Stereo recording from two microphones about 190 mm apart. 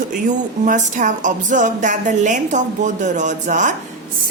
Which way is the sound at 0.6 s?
40° right (ahead or behind).